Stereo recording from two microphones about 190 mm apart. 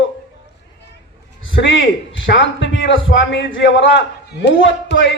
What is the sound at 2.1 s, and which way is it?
A man's voice, 70° left (ahead or behind).